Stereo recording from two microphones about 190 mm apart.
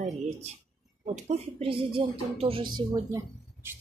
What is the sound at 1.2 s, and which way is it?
Speech, 35° right (ahead or behind).